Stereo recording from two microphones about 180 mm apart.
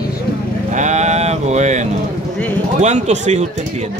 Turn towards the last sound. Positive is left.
turn(degrees=-40)  # may be behind; listen again after turning